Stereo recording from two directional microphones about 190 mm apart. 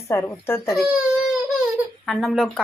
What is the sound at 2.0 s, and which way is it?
Speech, centre (ahead or behind).